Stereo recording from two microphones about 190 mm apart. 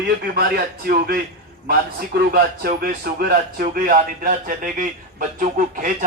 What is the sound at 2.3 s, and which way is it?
A man's voice, 55° right (ahead or behind).